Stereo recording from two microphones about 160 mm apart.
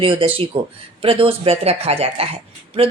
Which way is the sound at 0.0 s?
35° right (ahead or behind).